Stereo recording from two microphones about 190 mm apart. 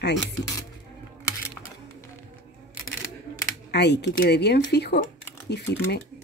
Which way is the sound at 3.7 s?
65° left (ahead or behind).